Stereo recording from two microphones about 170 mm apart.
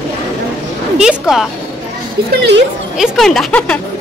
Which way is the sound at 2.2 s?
65° right (ahead or behind).